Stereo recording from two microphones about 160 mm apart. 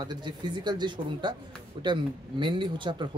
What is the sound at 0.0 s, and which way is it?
Speech, 25° right (ahead or behind).